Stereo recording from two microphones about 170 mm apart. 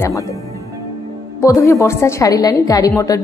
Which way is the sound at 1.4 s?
20° left (ahead or behind).